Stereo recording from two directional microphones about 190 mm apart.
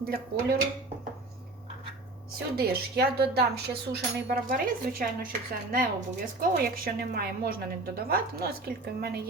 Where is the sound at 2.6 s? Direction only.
60° right (ahead or behind).